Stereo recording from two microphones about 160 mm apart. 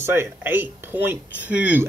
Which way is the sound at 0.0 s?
15° right (ahead or behind).